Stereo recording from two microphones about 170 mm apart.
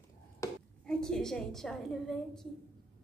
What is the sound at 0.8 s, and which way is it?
A woman's voice, 5° left (ahead or behind).